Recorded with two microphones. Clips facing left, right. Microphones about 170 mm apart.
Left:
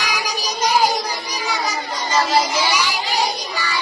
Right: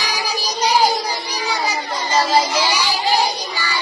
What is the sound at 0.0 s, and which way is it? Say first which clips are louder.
Child singing: right 1 dB; 35° right (ahead or behind).